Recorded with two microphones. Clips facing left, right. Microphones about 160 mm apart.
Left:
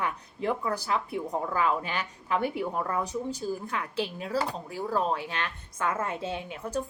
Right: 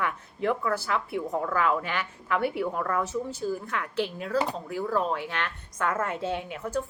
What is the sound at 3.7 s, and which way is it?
A woman's voice, 30° left (ahead or behind).